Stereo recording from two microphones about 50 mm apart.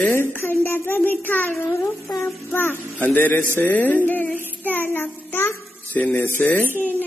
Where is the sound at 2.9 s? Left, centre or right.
Left.